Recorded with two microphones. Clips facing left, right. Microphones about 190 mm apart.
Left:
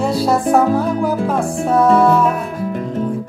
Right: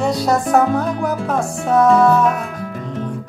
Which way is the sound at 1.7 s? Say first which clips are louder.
Even; centre (ahead or behind).